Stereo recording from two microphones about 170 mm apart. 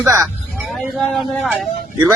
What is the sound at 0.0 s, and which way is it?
Speech, 15° right (ahead or behind).